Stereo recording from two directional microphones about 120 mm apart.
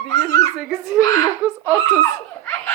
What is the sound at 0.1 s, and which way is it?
Giggle, 25° left (ahead or behind).